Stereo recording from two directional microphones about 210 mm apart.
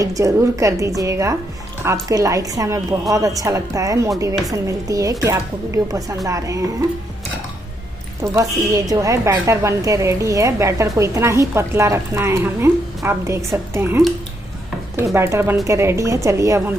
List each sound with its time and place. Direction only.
0.0 s a woman's voice: 15° right (ahead or behind)
8.2 s a woman's voice: 15° right (ahead or behind)